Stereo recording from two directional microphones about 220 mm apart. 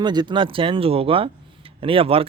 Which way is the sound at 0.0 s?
20° right (ahead or behind).